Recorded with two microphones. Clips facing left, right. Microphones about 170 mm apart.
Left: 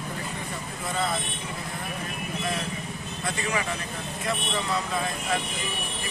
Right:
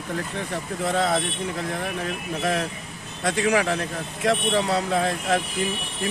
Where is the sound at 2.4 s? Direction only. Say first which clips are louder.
Right 7 dB; 70° right (ahead or behind).